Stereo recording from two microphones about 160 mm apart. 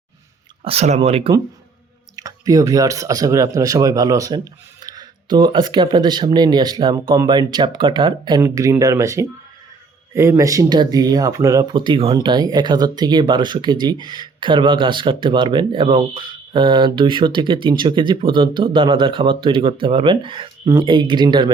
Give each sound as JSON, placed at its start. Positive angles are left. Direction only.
{"t": 0.6, "sound": "speech", "side_deg": -40}
{"t": 2.1, "sound": "speech", "side_deg": -20}